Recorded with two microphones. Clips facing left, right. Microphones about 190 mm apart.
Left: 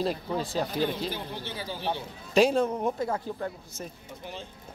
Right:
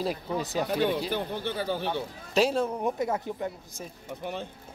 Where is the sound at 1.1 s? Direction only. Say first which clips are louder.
Right 6 dB; 55° right (ahead or behind).